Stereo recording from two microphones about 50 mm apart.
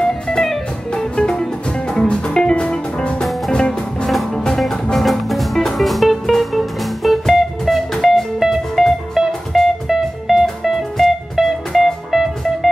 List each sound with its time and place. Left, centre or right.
0.0 s music: centre